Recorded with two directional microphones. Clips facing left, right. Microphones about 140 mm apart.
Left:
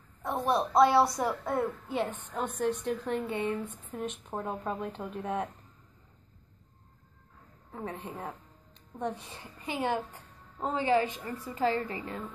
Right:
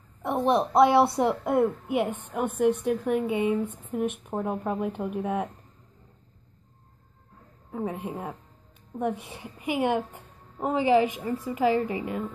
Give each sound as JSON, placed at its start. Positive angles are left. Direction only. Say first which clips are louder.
{"t": 0.2, "sound": "a woman's voice", "louder": "right 5 dB", "side_deg": -20}
{"t": 5.2, "sound": "speech", "louder": "right 3 dB", "side_deg": -5}
{"t": 7.7, "sound": "a woman's voice", "louder": "right 7 dB", "side_deg": -10}